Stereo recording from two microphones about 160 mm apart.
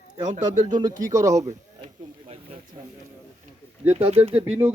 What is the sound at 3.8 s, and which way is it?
Speech, 40° right (ahead or behind).